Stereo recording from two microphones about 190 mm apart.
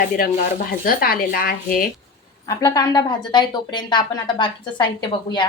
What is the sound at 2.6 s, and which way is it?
A woman's voice, 20° left (ahead or behind).